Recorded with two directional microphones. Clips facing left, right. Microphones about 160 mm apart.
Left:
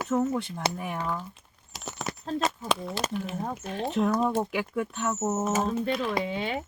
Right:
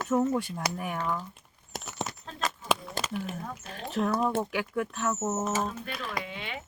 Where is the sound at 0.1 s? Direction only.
10° right (ahead or behind).